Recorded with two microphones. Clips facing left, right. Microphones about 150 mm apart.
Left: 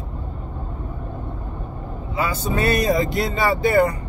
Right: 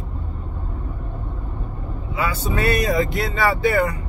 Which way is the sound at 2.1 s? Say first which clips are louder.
Left 1 dB; 35° left (ahead or behind).